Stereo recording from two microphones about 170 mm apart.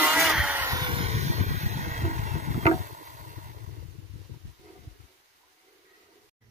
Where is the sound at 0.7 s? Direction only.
25° right (ahead or behind).